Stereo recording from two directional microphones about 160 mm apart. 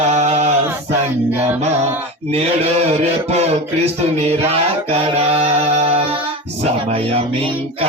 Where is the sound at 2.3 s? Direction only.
40° right (ahead or behind).